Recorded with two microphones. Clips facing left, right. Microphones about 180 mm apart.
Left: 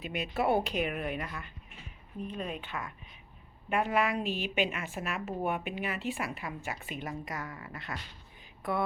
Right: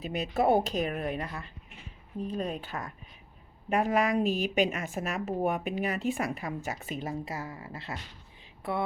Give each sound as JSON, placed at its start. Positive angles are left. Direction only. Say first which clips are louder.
{"t": 0.0, "sound": "speech", "louder": "right 4 dB", "side_deg": -40}